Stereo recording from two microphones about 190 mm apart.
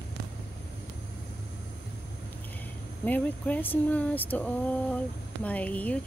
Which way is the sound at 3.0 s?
10° left (ahead or behind).